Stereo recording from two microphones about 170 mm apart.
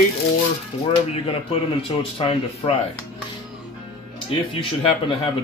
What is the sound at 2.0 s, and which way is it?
Speech, 35° left (ahead or behind).